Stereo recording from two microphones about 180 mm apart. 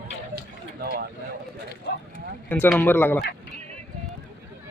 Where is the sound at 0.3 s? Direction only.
60° right (ahead or behind).